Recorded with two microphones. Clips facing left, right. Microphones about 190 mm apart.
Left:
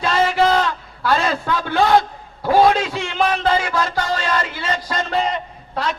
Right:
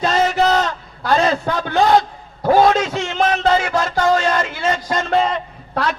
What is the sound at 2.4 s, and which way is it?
A man's voice, 45° right (ahead or behind).